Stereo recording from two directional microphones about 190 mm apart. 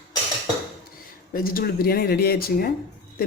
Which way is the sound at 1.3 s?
50° left (ahead or behind).